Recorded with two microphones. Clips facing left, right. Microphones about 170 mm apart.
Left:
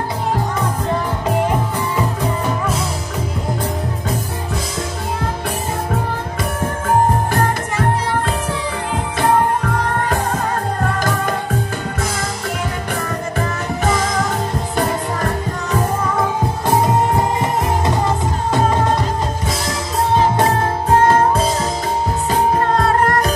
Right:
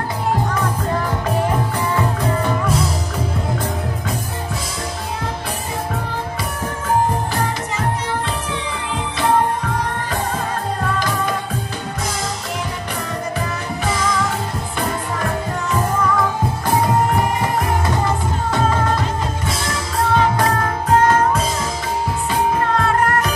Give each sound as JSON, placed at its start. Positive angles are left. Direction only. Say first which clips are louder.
{"t": 7.3, "sound": "music", "louder": "left 4 dB", "side_deg": 50}
{"t": 13.4, "sound": "music", "louder": "left 3 dB", "side_deg": 45}
{"t": 16.7, "sound": "music", "louder": "left 1 dB", "side_deg": 25}
{"t": 20.2, "sound": "music", "louder": "left 3 dB", "side_deg": 25}